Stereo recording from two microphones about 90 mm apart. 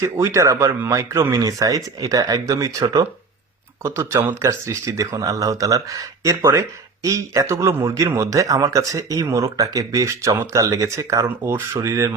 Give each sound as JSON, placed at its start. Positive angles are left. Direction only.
{"t": 0.0, "sound": "speech", "side_deg": -35}
{"t": 3.8, "sound": "speech", "side_deg": -30}